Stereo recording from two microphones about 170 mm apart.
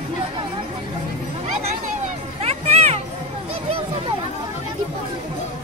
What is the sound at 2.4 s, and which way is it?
Music, 35° right (ahead or behind).